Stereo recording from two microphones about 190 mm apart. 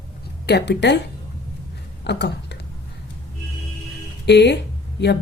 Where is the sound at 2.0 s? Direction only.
65° left (ahead or behind).